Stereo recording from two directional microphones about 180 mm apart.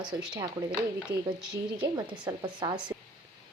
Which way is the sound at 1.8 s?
25° right (ahead or behind).